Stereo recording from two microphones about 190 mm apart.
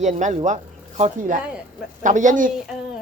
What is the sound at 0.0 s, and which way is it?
Speech, 40° right (ahead or behind).